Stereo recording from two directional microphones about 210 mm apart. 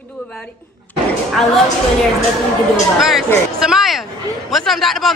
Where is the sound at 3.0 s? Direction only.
Centre (ahead or behind).